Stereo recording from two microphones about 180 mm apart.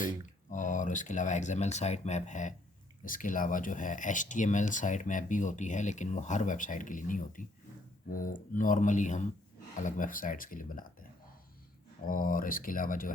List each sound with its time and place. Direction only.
0.5 s speech: 45° left (ahead or behind)
12.0 s speech: 50° left (ahead or behind)